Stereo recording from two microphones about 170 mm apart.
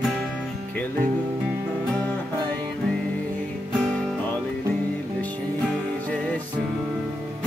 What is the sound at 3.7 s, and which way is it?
Music, 5° left (ahead or behind).